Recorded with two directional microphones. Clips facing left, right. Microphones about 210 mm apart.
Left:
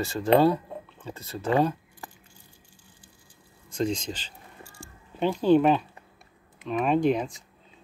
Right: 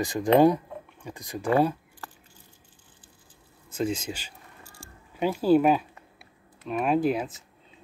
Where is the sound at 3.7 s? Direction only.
5° right (ahead or behind).